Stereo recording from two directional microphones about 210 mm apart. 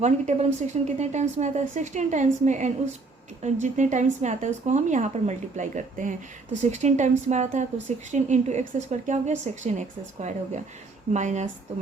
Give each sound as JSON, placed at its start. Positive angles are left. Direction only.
{"t": 0.0, "sound": "speech", "side_deg": -35}